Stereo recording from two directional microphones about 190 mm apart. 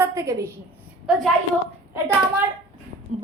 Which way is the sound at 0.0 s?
15° right (ahead or behind).